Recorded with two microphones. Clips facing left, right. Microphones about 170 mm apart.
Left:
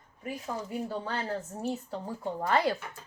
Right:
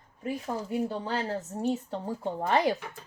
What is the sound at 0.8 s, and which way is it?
Speech, 25° right (ahead or behind).